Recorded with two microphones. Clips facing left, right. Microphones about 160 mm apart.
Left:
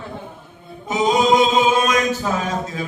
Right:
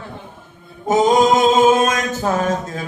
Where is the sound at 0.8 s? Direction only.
50° right (ahead or behind).